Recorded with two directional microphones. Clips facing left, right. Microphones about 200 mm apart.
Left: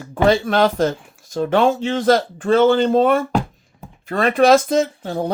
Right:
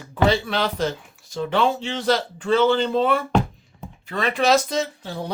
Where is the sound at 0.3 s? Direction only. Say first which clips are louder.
Left 8 dB; 50° left (ahead or behind).